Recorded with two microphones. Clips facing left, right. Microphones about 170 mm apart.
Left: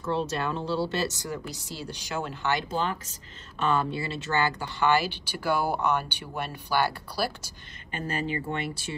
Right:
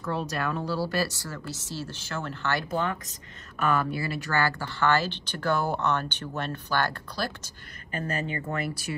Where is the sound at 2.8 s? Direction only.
30° left (ahead or behind); by 7.5 s 10° left (ahead or behind).